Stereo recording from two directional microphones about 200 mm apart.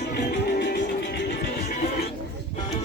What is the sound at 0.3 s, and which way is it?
Music, 50° left (ahead or behind).